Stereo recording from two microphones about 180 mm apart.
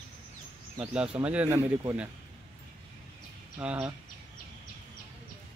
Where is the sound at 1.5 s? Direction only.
20° right (ahead or behind).